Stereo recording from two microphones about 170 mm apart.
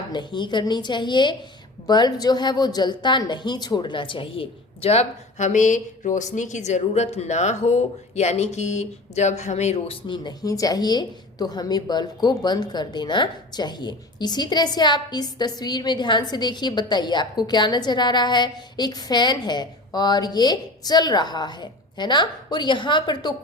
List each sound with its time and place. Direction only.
0.1 s a woman's voice: 25° left (ahead or behind)